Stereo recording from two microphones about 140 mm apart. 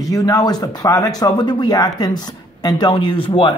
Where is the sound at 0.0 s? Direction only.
25° left (ahead or behind).